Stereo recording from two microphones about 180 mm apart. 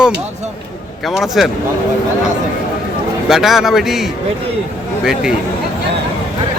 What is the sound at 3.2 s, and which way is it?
Speech, centre (ahead or behind).